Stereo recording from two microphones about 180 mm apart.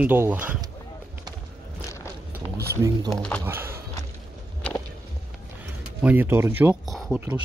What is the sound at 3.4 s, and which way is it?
Speech, 15° right (ahead or behind).